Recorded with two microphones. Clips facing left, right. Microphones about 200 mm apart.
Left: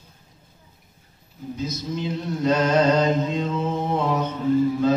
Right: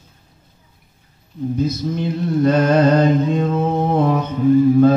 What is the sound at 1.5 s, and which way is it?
Mantra, 55° right (ahead or behind).